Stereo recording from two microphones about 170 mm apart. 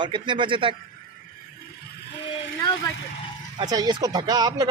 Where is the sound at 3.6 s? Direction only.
25° right (ahead or behind).